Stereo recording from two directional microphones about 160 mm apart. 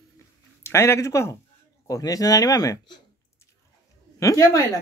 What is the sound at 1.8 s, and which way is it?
Speech, 20° left (ahead or behind).